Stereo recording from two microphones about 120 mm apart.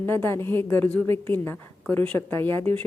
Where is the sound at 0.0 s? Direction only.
20° left (ahead or behind).